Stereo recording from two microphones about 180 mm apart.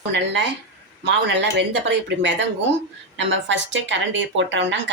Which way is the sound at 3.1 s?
90° right.